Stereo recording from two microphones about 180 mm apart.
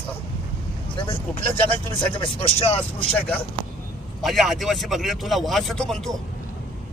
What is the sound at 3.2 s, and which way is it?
Speech, 10° left (ahead or behind).